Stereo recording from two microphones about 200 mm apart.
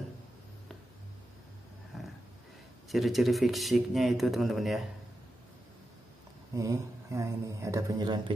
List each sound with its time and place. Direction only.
2.9 s speech: centre (ahead or behind)
6.5 s speech: 15° right (ahead or behind)